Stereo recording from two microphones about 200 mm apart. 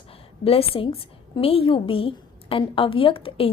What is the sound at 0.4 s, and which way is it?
A woman's voice, 30° left (ahead or behind).